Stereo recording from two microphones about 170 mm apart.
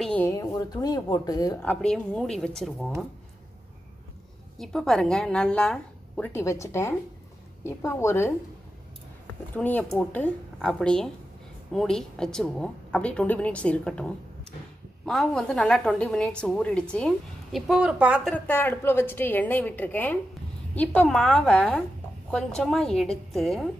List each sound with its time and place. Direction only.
0.0 s a sound: 5° left (ahead or behind)
0.3 s speech: 20° left (ahead or behind)
1.6 s a woman's voice: 5° left (ahead or behind)
4.6 s a woman's voice: centre (ahead or behind)
6.3 s a woman's voice: 15° left (ahead or behind)
9.6 s a woman's voice: 10° left (ahead or behind); by 18.3 s 5° right (ahead or behind)
18.3 s a woman's voice: 10° left (ahead or behind)